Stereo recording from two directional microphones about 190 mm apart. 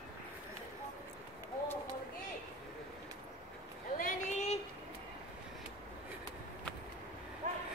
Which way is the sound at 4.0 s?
40° left (ahead or behind).